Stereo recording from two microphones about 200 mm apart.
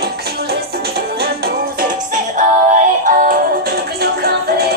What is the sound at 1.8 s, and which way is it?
Music, 40° right (ahead or behind).